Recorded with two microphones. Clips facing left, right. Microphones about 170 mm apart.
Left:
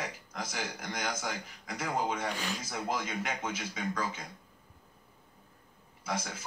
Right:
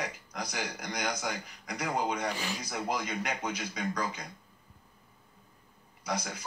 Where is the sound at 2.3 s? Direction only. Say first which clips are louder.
Right 1 dB; 10° right (ahead or behind).